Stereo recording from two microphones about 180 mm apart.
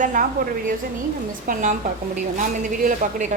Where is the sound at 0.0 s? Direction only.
45° right (ahead or behind).